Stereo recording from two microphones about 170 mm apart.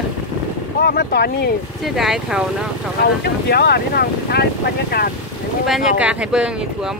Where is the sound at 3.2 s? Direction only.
70° left (ahead or behind).